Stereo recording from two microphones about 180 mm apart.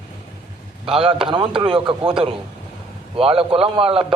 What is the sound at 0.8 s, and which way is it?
A man's voice, 30° right (ahead or behind).